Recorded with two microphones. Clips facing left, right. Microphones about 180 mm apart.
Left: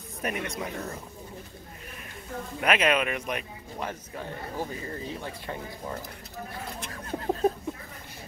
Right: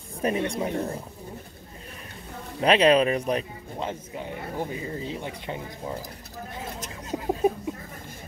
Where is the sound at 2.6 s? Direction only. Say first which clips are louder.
Right 6 dB; 30° right (ahead or behind).